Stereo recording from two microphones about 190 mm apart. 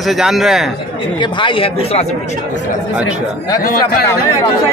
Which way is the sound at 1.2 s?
25° left (ahead or behind).